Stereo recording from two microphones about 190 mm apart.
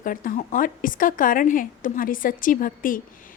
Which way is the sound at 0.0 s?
45° left (ahead or behind).